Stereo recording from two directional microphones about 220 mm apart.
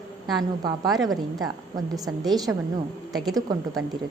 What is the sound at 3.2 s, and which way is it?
Speech, 20° right (ahead or behind).